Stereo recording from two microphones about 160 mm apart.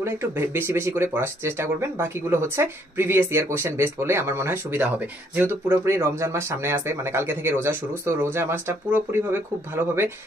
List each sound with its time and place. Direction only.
0.0 s speech: 15° right (ahead or behind)